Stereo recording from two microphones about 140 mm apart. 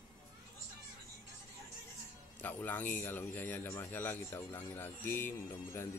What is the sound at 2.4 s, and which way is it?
Speech, 15° left (ahead or behind).